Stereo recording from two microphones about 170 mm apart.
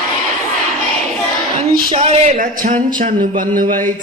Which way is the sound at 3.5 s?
55° right (ahead or behind).